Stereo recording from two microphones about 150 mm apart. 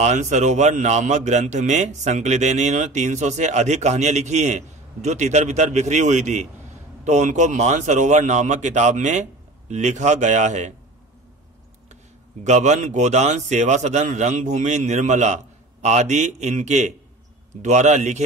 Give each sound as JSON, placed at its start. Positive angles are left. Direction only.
{"t": 0.0, "sound": "a man's voice", "side_deg": -50}
{"t": 12.4, "sound": "a man's voice", "side_deg": -50}